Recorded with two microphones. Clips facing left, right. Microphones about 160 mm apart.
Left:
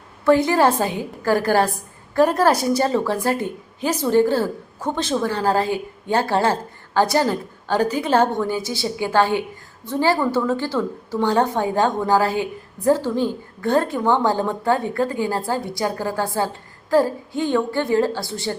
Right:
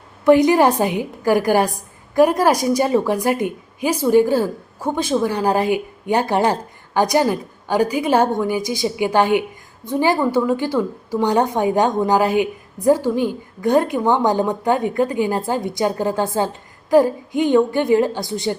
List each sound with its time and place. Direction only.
0.3 s a woman's voice: 15° right (ahead or behind)